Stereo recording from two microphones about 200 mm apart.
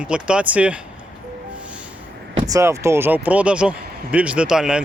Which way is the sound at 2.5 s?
15° right (ahead or behind).